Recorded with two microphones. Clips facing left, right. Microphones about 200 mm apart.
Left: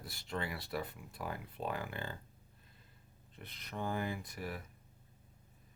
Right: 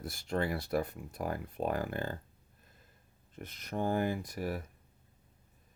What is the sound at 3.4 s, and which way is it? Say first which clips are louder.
Speech: right 7 dB; 45° right (ahead or behind).